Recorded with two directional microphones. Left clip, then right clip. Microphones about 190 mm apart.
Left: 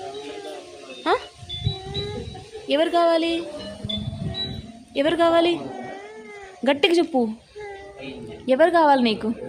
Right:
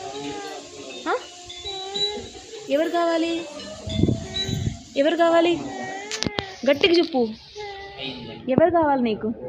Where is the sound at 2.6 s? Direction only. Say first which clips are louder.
Left 3 dB; 30° left (ahead or behind).